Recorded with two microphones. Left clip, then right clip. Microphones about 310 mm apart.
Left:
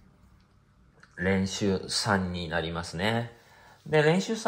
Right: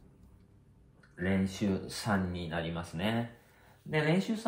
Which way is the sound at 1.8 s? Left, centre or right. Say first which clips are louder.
Left 7 dB; left.